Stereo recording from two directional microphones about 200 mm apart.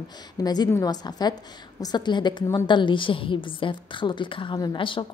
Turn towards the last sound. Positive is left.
turn(degrees=25)  # may be behind; listen again after turning